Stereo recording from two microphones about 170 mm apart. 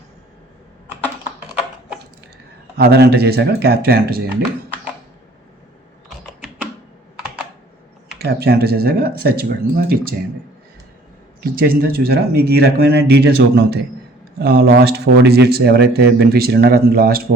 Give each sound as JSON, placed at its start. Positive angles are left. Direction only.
{"t": 2.7, "sound": "speech", "side_deg": -70}
{"t": 8.2, "sound": "speech", "side_deg": -65}
{"t": 11.6, "sound": "speech", "side_deg": -65}